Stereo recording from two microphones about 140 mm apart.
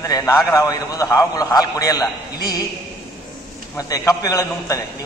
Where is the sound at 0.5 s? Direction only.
25° left (ahead or behind).